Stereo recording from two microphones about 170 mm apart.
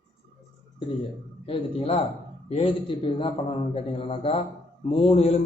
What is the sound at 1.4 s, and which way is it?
A man's voice, 35° left (ahead or behind).